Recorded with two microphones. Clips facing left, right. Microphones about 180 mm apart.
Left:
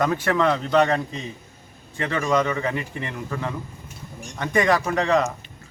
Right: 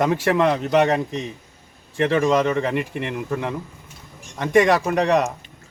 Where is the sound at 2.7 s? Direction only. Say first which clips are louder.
Right 5 dB; 70° right (ahead or behind).